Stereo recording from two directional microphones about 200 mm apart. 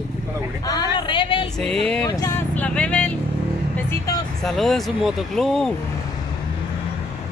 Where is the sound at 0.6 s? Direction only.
20° left (ahead or behind).